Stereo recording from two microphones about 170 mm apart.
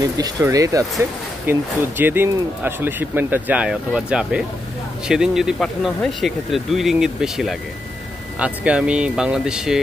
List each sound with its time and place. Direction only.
0.2 s speech: 20° right (ahead or behind); by 9.8 s 5° right (ahead or behind)